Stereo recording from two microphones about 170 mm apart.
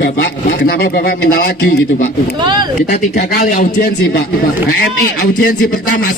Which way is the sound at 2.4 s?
25° right (ahead or behind).